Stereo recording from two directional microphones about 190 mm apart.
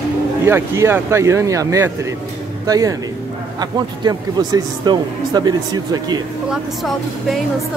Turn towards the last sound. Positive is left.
turn(degrees=0)  # may be behind; listen again after turning